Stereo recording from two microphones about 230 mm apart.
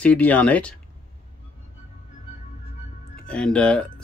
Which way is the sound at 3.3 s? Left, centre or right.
Centre.